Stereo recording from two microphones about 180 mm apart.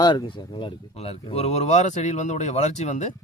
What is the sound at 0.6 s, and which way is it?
Speech, 35° left (ahead or behind).